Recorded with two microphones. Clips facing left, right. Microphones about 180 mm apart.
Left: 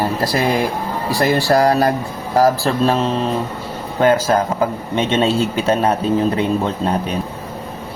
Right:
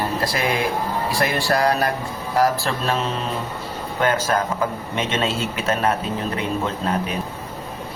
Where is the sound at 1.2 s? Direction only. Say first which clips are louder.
Left 7 dB; 40° left (ahead or behind).